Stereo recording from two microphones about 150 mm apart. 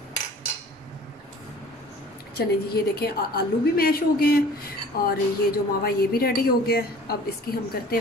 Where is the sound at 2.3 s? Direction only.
90° left.